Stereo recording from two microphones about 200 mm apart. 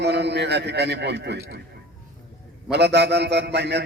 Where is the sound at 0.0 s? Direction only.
55° right (ahead or behind).